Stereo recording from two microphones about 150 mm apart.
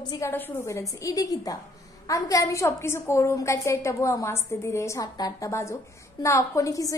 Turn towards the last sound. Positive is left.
turn(degrees=20)  # may be behind; listen again after turning